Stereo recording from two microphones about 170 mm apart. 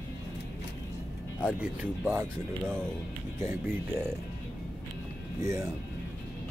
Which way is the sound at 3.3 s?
15° right (ahead or behind).